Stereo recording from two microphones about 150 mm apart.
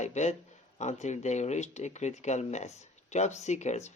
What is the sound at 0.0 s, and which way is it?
Speech, 50° left (ahead or behind).